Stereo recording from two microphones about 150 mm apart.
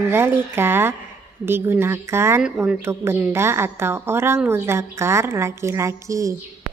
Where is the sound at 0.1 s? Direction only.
15° right (ahead or behind).